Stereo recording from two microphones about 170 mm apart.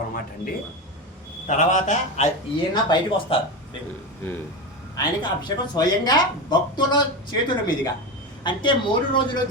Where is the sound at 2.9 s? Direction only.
30° left (ahead or behind).